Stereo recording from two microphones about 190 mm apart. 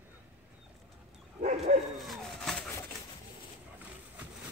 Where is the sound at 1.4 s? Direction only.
35° right (ahead or behind).